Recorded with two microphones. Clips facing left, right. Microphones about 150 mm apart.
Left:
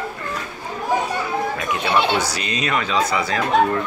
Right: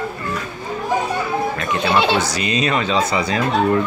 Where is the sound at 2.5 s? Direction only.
30° right (ahead or behind).